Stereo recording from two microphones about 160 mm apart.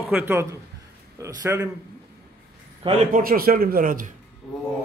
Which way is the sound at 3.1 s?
65° right (ahead or behind).